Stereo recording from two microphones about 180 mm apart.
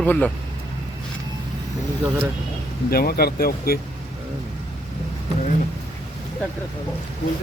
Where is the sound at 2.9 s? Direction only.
55° left (ahead or behind).